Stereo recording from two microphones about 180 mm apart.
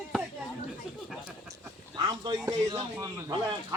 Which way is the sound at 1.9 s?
20° right (ahead or behind).